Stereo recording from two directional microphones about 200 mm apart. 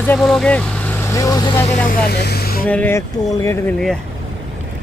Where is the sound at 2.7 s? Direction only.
10° left (ahead or behind).